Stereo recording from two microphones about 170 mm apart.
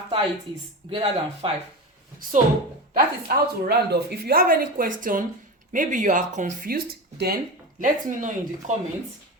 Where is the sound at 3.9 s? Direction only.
70° right (ahead or behind).